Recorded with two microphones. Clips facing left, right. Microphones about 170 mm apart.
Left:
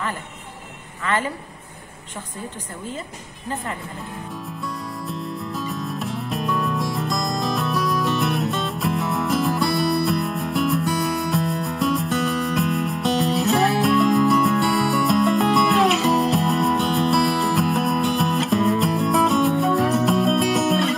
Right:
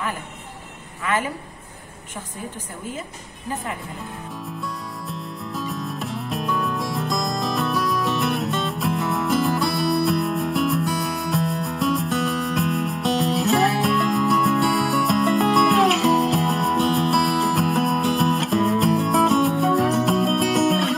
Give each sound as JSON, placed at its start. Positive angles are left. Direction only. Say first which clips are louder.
{"t": 1.0, "sound": "a woman's voice", "louder": "even", "side_deg": -10}
{"t": 5.0, "sound": "music", "louder": "left 3 dB", "side_deg": 0}